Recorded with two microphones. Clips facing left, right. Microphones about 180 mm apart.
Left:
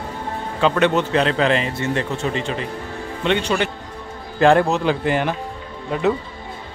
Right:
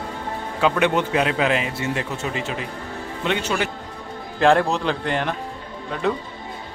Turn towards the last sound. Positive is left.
turn(degrees=5)  # may be behind; listen again after turning